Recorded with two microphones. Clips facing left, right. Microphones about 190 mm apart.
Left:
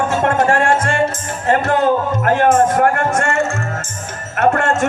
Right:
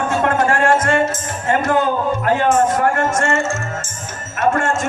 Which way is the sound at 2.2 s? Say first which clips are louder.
Left 3 dB; 55° left (ahead or behind).